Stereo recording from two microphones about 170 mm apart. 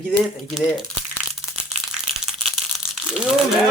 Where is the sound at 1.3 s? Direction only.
Centre (ahead or behind).